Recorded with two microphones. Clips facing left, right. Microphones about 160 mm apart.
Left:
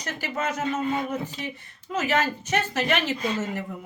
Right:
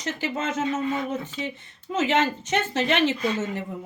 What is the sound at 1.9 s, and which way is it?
Speech, 20° right (ahead or behind).